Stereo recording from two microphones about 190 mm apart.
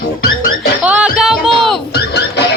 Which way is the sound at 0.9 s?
5° right (ahead or behind).